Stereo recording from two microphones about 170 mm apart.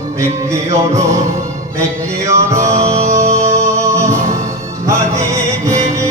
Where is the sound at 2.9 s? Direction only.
45° right (ahead or behind).